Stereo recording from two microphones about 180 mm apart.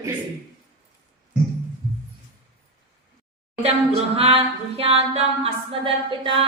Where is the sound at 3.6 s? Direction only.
35° right (ahead or behind).